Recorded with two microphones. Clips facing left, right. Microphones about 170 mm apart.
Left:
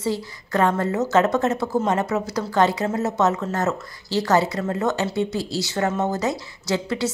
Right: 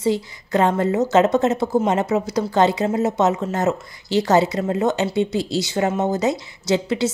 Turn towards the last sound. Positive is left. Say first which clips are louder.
# right 4 dB
turn(degrees=-20)  # may be behind; listen again after turning